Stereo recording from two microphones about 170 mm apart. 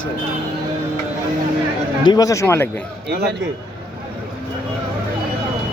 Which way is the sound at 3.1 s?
70° right (ahead or behind).